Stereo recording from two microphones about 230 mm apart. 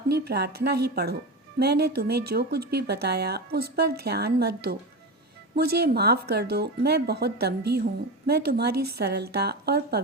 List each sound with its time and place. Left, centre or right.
0.1 s speech: right